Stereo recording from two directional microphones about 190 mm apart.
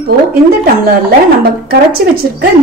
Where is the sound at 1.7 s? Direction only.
55° right (ahead or behind).